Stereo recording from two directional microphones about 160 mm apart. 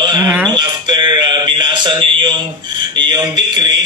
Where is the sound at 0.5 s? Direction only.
25° right (ahead or behind).